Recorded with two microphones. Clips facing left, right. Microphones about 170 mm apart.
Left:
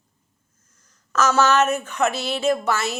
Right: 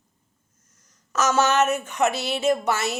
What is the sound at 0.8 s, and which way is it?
A woman's voice, 20° right (ahead or behind).